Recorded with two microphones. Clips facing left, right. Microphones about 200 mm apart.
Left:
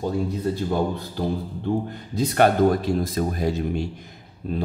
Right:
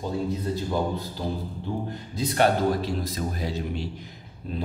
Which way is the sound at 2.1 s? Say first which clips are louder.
Left 4 dB; 50° left (ahead or behind).